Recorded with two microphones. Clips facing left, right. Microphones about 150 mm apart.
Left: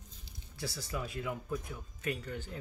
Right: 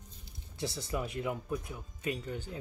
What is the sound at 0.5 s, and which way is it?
Speech, 20° right (ahead or behind).